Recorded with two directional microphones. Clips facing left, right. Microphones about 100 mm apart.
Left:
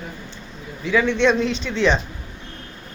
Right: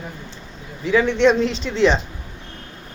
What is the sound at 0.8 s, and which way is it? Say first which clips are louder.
A man's voice: right 2 dB; 35° right (ahead or behind).